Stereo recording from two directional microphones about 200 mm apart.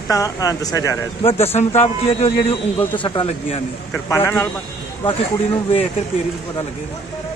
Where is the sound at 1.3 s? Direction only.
30° left (ahead or behind).